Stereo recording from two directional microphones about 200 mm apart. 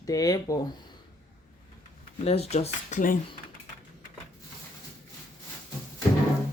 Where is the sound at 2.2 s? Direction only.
30° left (ahead or behind).